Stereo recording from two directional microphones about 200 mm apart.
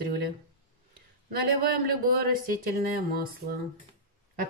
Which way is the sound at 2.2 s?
45° right (ahead or behind).